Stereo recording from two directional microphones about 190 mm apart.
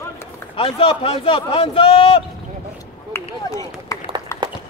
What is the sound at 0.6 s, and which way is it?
A man's voice, 30° left (ahead or behind).